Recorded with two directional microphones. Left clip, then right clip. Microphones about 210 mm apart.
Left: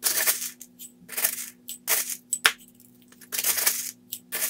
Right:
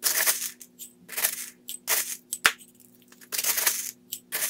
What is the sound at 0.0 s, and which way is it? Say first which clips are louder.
Coin: even; 5° right (ahead or behind).